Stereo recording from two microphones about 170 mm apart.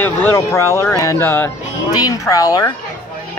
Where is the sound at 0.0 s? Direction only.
15° left (ahead or behind).